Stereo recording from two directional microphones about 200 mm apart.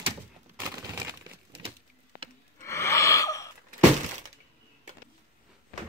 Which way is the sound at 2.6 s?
15° left (ahead or behind).